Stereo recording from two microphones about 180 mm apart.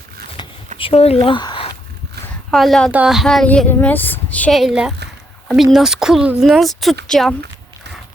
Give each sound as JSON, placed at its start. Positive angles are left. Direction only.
{"t": 0.4, "sound": "a sound", "side_deg": 25}
{"t": 0.8, "sound": "speech", "side_deg": 35}
{"t": 2.5, "sound": "a woman's voice", "side_deg": 0}